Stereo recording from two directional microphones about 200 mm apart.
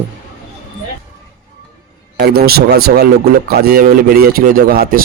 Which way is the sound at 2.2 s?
50° right (ahead or behind).